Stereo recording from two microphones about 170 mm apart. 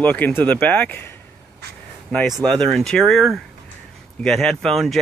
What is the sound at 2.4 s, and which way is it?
Speech, 5° left (ahead or behind).